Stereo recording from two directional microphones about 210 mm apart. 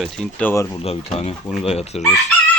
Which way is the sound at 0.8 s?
30° left (ahead or behind).